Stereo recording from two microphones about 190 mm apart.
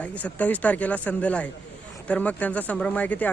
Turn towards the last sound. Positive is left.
turn(degrees=10)  # may be behind; listen again after turning